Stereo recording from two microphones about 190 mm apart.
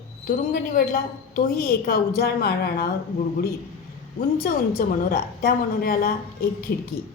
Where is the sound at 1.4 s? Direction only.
55° left (ahead or behind).